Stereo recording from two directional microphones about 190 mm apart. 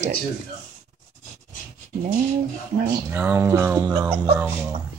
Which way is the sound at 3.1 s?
10° right (ahead or behind).